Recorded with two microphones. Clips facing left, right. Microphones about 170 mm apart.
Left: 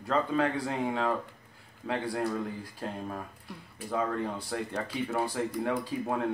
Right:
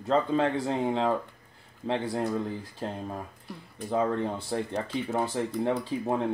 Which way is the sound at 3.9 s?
25° right (ahead or behind).